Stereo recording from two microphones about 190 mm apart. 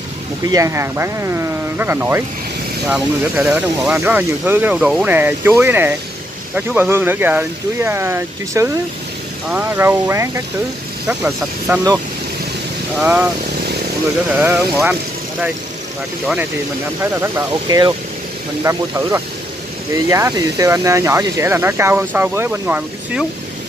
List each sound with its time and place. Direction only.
0.5 s speech: 15° right (ahead or behind)
13.0 s speech: 10° right (ahead or behind)
14.4 s speech: 10° right (ahead or behind)
17.0 s speech: 15° right (ahead or behind)